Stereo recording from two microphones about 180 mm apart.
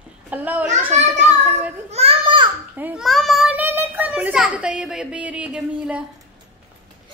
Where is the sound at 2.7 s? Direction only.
5° right (ahead or behind).